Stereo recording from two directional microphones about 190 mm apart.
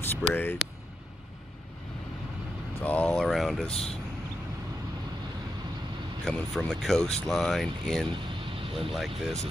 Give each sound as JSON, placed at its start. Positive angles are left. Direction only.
{"t": 0.0, "sound": "speech", "side_deg": 10}
{"t": 2.8, "sound": "speech", "side_deg": 10}
{"t": 3.7, "sound": "speech", "side_deg": 35}
{"t": 6.2, "sound": "speech", "side_deg": 5}